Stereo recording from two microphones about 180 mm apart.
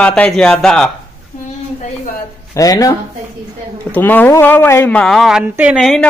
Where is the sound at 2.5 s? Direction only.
20° left (ahead or behind).